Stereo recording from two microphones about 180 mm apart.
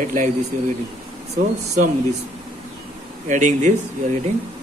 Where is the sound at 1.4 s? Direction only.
50° right (ahead or behind).